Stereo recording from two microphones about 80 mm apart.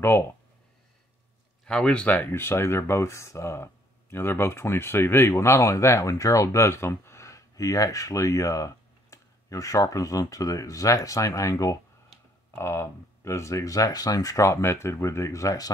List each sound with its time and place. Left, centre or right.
1.6 s speech: centre
2.3 s speech: left